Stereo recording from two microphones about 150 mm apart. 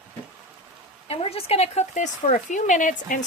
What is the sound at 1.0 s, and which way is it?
Speech, 40° left (ahead or behind).